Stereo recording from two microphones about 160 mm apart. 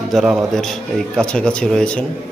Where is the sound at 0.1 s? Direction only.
Centre (ahead or behind).